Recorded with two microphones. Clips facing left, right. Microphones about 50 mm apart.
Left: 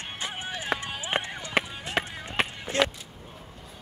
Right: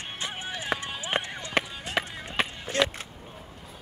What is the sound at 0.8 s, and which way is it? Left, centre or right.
Run, left.